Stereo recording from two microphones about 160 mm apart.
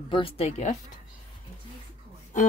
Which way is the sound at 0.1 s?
35° left (ahead or behind).